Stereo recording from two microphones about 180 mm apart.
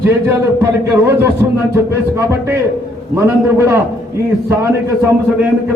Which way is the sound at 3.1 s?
15° right (ahead or behind).